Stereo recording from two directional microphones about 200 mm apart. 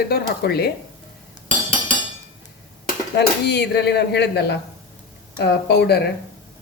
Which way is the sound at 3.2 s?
55° left (ahead or behind).